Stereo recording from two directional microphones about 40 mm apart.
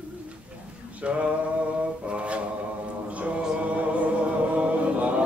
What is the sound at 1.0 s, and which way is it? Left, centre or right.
Male singing, right.